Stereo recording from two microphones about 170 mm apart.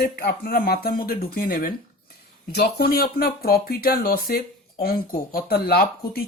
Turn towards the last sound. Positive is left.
turn(degrees=65)  # may be behind; listen again after turning